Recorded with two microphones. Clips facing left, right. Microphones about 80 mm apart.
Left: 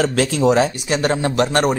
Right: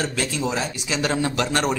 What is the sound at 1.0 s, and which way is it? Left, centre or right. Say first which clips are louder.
Speech: left 4 dB; left.